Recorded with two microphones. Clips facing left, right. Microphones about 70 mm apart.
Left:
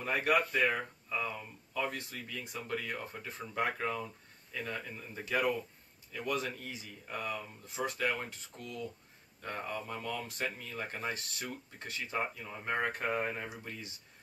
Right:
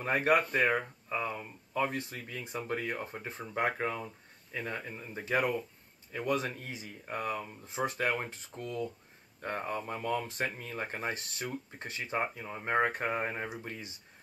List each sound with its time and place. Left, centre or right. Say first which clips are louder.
0.0 s speech: right 3 dB; right
2.8 s speech: right 4 dB; right
6.1 s speech: right 3 dB; right
7.6 s speech: right 3 dB; right
7.9 s speech: right 2 dB; right
12.8 s speech: right 3 dB; right
13.2 s speech: right 2 dB; right